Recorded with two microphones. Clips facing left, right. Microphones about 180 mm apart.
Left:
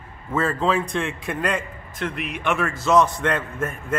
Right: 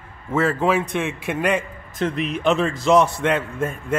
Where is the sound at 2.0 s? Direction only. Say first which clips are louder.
Right 6 dB; 40° right (ahead or behind).